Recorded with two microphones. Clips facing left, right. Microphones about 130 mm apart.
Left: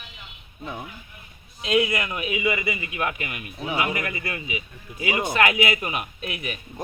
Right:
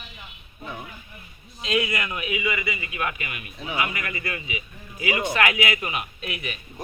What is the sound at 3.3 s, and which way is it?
A man's voice, 35° left (ahead or behind).